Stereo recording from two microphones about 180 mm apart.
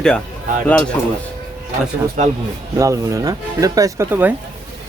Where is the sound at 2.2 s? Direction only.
40° right (ahead or behind).